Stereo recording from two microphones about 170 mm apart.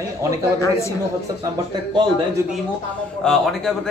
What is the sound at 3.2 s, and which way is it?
Speech, 5° left (ahead or behind).